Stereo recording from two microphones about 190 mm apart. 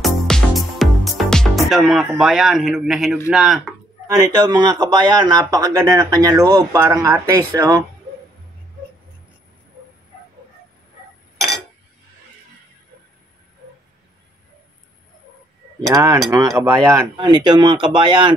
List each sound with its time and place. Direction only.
0.0 s music: centre (ahead or behind)
3.3 s speech: centre (ahead or behind)
4.1 s speech: 20° right (ahead or behind)
11.3 s chink: centre (ahead or behind)
15.8 s speech: 20° right (ahead or behind)